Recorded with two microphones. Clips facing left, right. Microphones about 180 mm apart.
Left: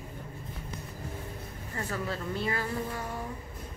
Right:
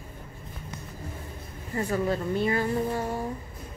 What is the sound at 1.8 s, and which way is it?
Speech, 15° right (ahead or behind).